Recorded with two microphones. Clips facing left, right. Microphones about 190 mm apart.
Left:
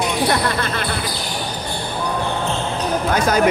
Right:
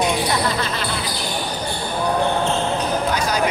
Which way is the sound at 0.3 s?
55° left (ahead or behind).